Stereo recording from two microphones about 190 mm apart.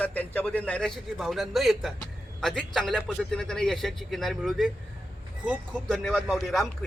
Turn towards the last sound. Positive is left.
turn(degrees=0)  # may be behind; listen again after turning